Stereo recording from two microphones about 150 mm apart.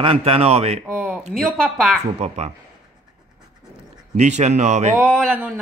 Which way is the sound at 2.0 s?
45° right (ahead or behind).